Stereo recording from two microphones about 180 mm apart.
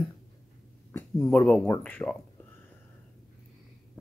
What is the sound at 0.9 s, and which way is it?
Speech, 10° left (ahead or behind).